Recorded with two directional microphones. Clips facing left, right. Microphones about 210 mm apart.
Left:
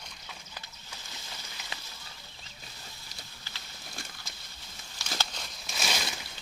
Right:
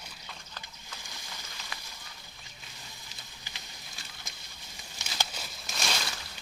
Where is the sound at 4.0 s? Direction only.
50° left (ahead or behind).